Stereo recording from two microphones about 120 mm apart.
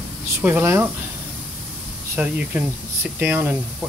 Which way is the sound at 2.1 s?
10° right (ahead or behind).